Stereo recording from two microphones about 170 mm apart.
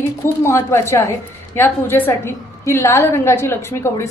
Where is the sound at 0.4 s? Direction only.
15° left (ahead or behind).